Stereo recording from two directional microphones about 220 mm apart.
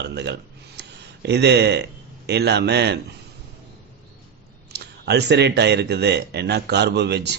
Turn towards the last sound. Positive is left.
turn(degrees=-50)  # may be behind; listen again after turning